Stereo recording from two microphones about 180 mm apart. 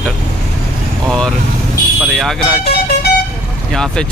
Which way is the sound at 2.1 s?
Centre (ahead or behind).